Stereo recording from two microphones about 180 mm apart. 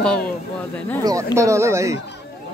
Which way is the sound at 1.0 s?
15° right (ahead or behind).